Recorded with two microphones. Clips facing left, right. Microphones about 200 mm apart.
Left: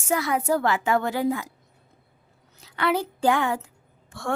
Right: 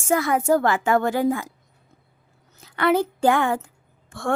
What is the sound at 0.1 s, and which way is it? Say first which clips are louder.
A woman's voice: right 4 dB; 50° right (ahead or behind).